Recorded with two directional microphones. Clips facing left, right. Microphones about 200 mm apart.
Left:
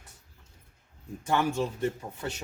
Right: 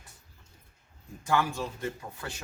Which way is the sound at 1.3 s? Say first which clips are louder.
Left 2 dB; 20° left (ahead or behind).